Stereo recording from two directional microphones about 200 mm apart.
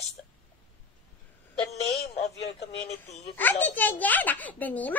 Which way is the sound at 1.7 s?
35° left (ahead or behind).